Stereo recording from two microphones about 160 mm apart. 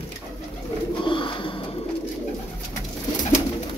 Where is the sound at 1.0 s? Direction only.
30° left (ahead or behind).